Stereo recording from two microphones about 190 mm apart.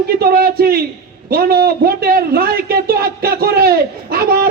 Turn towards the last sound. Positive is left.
turn(degrees=-55)  # may be behind; listen again after turning